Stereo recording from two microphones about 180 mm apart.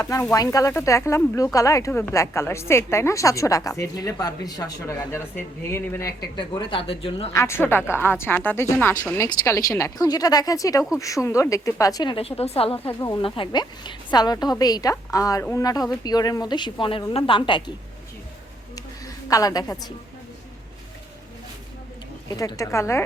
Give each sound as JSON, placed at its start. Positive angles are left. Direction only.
{"t": 0.0, "sound": "a woman's voice", "side_deg": 15}
{"t": 6.3, "sound": "speech", "side_deg": 25}
{"t": 7.3, "sound": "a woman's voice", "side_deg": 15}
{"t": 12.8, "sound": "speech", "side_deg": 15}
{"t": 19.0, "sound": "a woman's voice", "side_deg": 20}
{"t": 22.3, "sound": "a woman's voice", "side_deg": 20}